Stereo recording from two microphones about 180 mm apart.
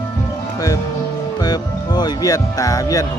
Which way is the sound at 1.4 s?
20° left (ahead or behind).